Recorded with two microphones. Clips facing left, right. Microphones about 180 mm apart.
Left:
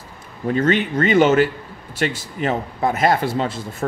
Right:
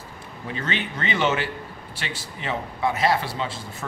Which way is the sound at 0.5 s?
45° left (ahead or behind).